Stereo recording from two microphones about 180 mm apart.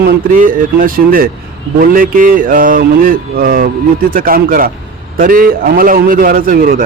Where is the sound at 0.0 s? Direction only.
50° right (ahead or behind).